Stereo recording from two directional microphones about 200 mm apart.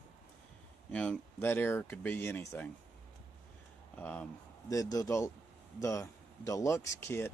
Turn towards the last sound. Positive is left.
turn(degrees=10)  # may be behind; listen again after turning